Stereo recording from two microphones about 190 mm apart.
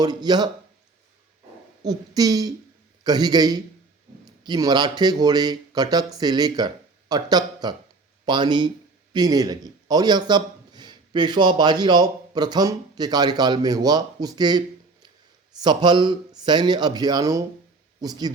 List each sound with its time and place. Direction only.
0.0 s speech: 20° right (ahead or behind)
1.8 s a man's voice: 20° right (ahead or behind)
15.6 s speech: 25° right (ahead or behind)